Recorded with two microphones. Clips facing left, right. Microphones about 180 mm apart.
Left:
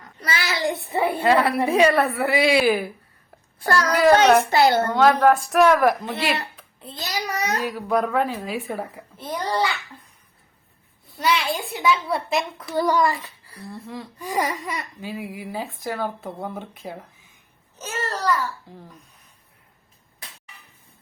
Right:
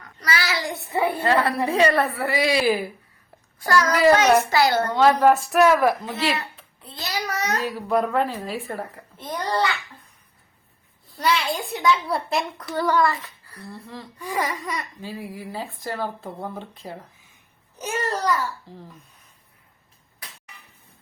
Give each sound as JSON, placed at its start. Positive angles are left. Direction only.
{"t": 0.2, "sound": "a child's voice", "side_deg": 25}
{"t": 1.2, "sound": "speech", "side_deg": 15}
{"t": 1.9, "sound": "speech", "side_deg": 10}
{"t": 2.2, "sound": "a child's voice", "side_deg": 20}
{"t": 2.6, "sound": "a child's voice", "side_deg": 0}
{"t": 3.6, "sound": "a child's voice", "side_deg": 30}
{"t": 4.9, "sound": "a child's voice", "side_deg": -10}
{"t": 7.0, "sound": "a child's voice", "side_deg": 15}
{"t": 11.2, "sound": "a child's voice", "side_deg": 0}
{"t": 12.7, "sound": "a child's voice", "side_deg": 15}
{"t": 17.7, "sound": "a child's voice", "side_deg": -10}